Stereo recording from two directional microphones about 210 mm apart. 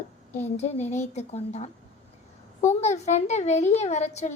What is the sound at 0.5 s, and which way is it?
A woman's voice, 30° left (ahead or behind).